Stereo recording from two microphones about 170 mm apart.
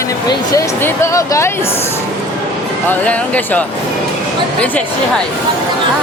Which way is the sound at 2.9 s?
10° left (ahead or behind).